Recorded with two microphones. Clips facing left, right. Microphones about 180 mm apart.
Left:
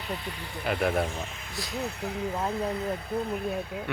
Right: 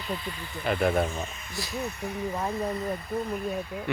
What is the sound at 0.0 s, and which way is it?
Speech, 65° left (ahead or behind).